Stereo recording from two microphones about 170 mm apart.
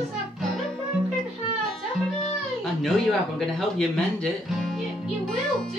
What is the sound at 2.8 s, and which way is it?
Speech, centre (ahead or behind).